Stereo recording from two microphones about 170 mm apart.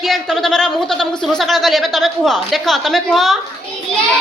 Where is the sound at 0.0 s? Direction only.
Centre (ahead or behind).